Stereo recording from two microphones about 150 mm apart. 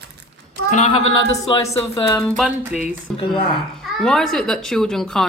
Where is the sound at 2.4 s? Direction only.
5° right (ahead or behind).